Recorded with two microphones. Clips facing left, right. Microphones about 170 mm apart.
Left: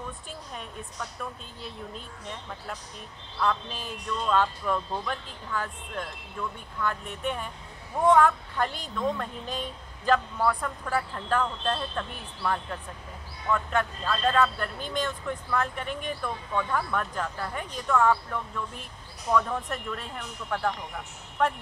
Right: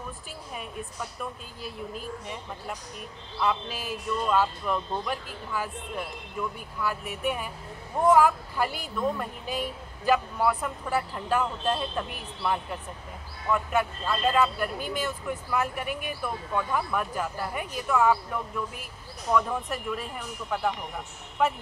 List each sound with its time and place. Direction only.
0.6 s a man's voice: 5° right (ahead or behind)